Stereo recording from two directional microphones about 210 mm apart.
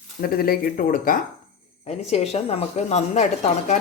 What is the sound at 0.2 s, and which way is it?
Speech, 45° left (ahead or behind).